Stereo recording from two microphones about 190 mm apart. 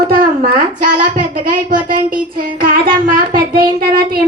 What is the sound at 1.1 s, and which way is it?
A child's voice, 45° right (ahead or behind).